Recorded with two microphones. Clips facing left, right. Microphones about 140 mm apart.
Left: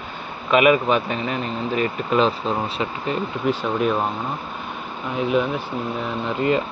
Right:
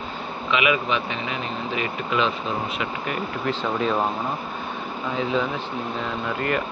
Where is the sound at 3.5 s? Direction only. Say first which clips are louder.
Left 3 dB; 10° left (ahead or behind).